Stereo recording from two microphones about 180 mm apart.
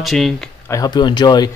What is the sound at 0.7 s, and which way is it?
Speech, 20° left (ahead or behind).